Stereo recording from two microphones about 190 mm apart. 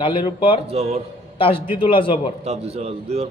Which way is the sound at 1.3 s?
30° left (ahead or behind).